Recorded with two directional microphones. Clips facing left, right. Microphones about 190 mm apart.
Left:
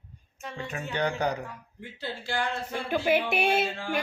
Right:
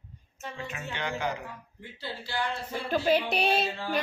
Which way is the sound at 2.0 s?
50° left (ahead or behind).